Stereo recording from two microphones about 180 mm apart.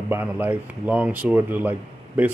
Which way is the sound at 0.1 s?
10° right (ahead or behind).